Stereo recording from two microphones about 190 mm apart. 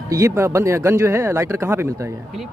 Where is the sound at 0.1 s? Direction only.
15° right (ahead or behind).